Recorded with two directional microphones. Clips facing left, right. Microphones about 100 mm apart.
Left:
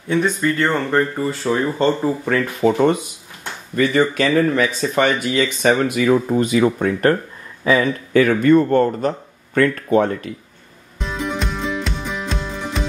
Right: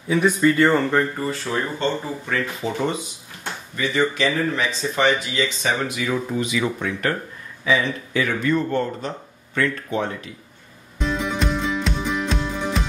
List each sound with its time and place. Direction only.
0.1 s speech: 5° right (ahead or behind)
1.5 s speech: 35° left (ahead or behind)
2.2 s speech: 60° left (ahead or behind)
11.0 s music: centre (ahead or behind)